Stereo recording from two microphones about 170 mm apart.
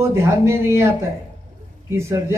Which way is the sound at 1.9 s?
15° right (ahead or behind).